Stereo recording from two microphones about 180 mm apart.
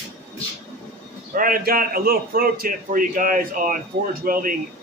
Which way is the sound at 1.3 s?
50° right (ahead or behind).